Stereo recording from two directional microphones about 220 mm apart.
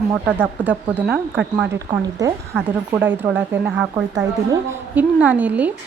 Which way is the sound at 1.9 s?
15° right (ahead or behind).